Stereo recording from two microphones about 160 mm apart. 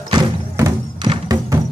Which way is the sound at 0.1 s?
25° right (ahead or behind).